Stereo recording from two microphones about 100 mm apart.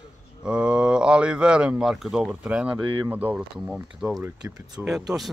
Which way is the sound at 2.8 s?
55° right (ahead or behind).